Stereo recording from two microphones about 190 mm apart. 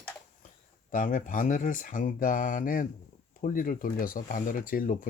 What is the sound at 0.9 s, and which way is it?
Speech, 45° left (ahead or behind).